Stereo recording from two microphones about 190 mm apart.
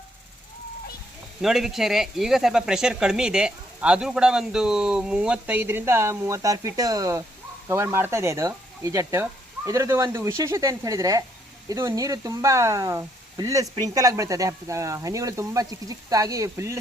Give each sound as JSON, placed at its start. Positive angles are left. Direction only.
{"t": 1.4, "sound": "speech", "side_deg": 0}